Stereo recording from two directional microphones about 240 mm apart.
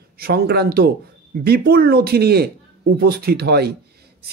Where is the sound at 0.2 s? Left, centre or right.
Right.